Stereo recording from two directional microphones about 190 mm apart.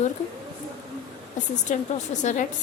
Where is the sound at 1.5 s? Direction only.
40° left (ahead or behind).